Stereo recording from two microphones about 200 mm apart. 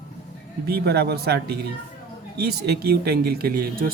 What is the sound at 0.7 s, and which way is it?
Speech, 55° right (ahead or behind).